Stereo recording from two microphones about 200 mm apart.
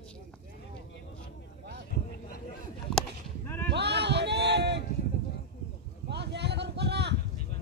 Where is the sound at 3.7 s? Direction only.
55° right (ahead or behind).